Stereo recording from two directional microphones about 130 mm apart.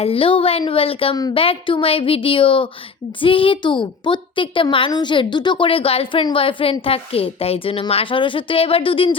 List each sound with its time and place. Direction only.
0.0 s a woman's voice: 45° left (ahead or behind)